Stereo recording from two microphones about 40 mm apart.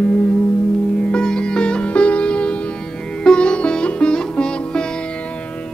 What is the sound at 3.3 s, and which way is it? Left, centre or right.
Music, left.